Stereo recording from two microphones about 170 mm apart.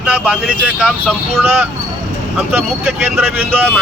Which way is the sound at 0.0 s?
5° right (ahead or behind).